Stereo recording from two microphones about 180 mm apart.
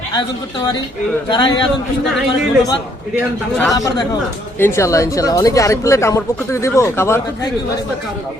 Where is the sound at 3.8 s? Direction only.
20° left (ahead or behind).